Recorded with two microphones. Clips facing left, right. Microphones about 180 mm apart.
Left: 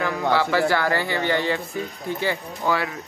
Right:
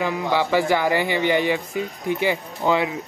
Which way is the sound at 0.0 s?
15° right (ahead or behind).